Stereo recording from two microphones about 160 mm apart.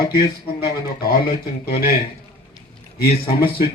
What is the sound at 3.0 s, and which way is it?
Speech, 70° left (ahead or behind).